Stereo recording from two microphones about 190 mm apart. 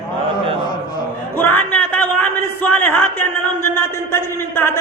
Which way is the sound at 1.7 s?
10° left (ahead or behind).